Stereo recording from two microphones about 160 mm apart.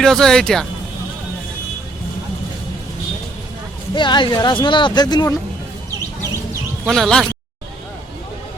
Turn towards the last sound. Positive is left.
turn(degrees=5)  # may be behind; listen again after turning